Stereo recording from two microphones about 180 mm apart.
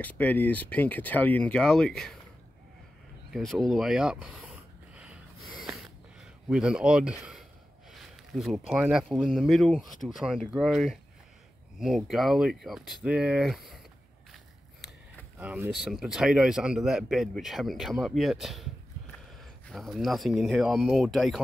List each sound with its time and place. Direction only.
0.0 s speech: 10° left (ahead or behind)
3.3 s a sound: centre (ahead or behind)
6.5 s speech: 5° right (ahead or behind)
7.9 s a sound: centre (ahead or behind)
8.8 s speech: centre (ahead or behind)
15.3 s speech: 10° right (ahead or behind)
19.7 s speech: centre (ahead or behind)